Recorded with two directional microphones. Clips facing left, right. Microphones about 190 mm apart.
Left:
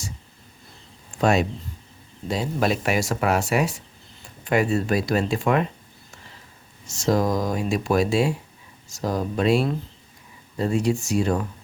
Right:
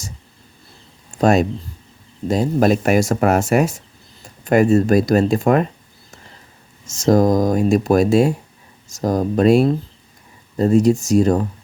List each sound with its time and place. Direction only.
1.2 s speech: 45° right (ahead or behind)
6.8 s speech: 45° right (ahead or behind)